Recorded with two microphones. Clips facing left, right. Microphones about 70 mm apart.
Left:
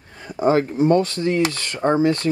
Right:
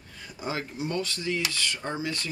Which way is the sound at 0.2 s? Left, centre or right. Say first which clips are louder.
Left 15 dB; left.